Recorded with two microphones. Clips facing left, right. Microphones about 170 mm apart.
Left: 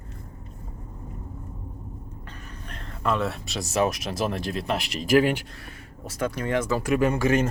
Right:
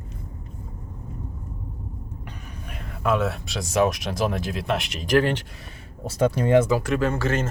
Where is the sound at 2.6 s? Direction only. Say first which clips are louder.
Right 2 dB; 10° right (ahead or behind); by 5.4 s 10° left (ahead or behind).